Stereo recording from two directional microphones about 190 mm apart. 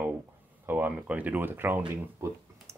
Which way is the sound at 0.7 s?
10° right (ahead or behind).